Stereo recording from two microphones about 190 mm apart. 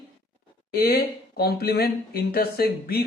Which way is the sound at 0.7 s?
55° left (ahead or behind).